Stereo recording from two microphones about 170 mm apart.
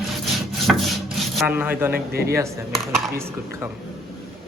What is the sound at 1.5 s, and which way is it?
Speech, 10° right (ahead or behind).